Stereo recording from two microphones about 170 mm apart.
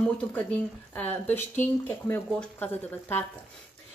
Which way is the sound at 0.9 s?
10° left (ahead or behind).